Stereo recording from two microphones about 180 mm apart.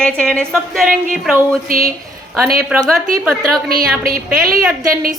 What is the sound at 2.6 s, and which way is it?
A woman's voice, centre (ahead or behind).